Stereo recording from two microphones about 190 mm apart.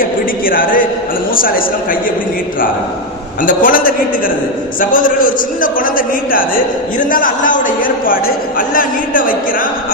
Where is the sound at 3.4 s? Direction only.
45° left (ahead or behind).